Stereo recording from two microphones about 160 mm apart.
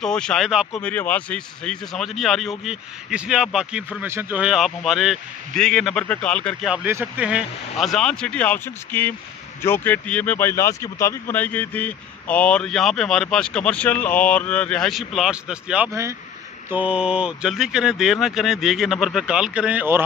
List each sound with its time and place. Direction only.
0.0 s speech: 5° left (ahead or behind)
0.7 s speech: 10° left (ahead or behind)
6.7 s speech: 10° right (ahead or behind)
15.9 s speech: 20° right (ahead or behind)
16.7 s speech: 5° right (ahead or behind)